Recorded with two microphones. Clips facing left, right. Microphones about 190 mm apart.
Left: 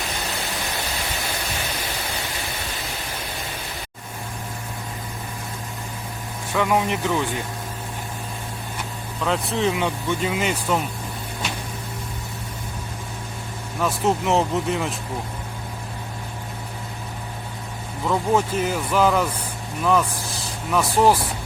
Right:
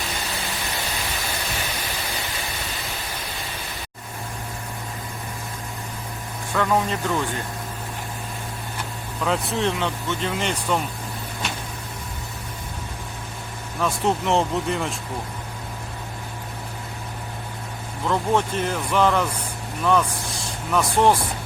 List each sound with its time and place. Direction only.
6.5 s speech: 10° left (ahead or behind)
9.2 s speech: centre (ahead or behind)
13.8 s speech: centre (ahead or behind)
18.0 s speech: 5° left (ahead or behind)